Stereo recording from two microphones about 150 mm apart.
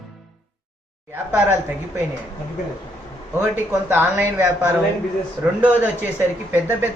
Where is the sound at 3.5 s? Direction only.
10° right (ahead or behind).